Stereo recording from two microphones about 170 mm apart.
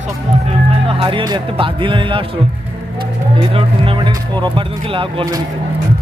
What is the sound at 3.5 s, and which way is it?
Speech, 30° right (ahead or behind).